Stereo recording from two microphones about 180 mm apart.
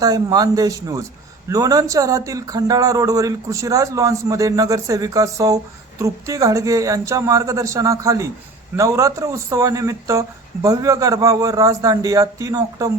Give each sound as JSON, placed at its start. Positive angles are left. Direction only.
{"t": 0.0, "sound": "speech", "side_deg": -20}